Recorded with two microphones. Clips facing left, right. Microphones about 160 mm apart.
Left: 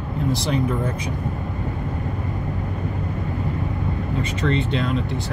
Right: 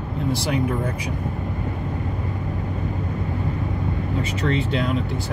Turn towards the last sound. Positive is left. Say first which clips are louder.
# even
turn(degrees=-5)  # may be behind; listen again after turning